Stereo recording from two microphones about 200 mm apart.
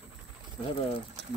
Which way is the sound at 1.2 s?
60° right (ahead or behind).